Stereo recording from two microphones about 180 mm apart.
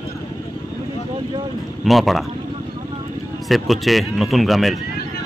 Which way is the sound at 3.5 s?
Centre (ahead or behind).